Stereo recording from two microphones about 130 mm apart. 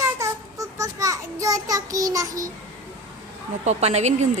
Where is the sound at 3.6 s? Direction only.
60° right (ahead or behind).